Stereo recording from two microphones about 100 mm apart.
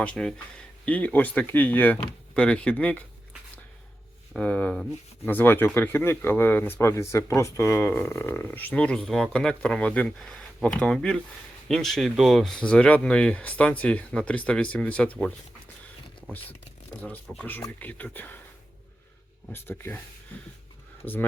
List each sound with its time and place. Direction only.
0.0 s speech: 10° left (ahead or behind)
4.4 s speech: 15° left (ahead or behind)
16.9 s speech: 15° left (ahead or behind)
19.5 s speech: 20° left (ahead or behind)
21.0 s speech: 20° left (ahead or behind)